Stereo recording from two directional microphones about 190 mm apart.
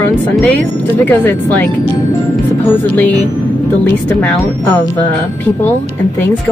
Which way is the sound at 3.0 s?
10° left (ahead or behind).